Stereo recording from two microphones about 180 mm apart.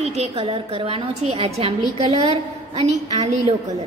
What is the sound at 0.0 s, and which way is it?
A woman's voice, 35° right (ahead or behind).